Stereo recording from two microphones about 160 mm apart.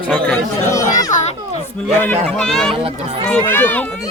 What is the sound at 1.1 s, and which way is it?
Speech, 50° left (ahead or behind).